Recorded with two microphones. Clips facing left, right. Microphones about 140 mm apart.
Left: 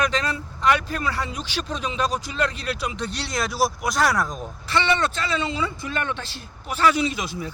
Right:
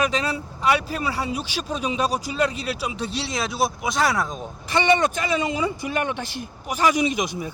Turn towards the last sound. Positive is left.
turn(degrees=-15)  # may be behind; listen again after turning